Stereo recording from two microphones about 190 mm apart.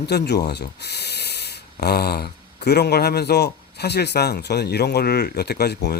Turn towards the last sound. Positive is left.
turn(degrees=60)  # may be behind; listen again after turning